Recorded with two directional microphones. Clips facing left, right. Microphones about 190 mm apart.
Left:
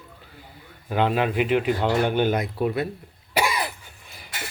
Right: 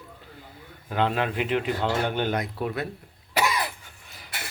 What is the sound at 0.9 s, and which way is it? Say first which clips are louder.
Speech: left 3 dB; 10° left (ahead or behind).